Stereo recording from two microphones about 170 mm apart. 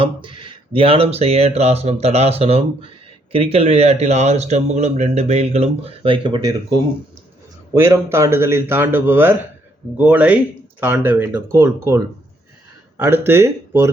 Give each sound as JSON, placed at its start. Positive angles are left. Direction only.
{"t": 0.0, "sound": "a man's voice", "side_deg": -30}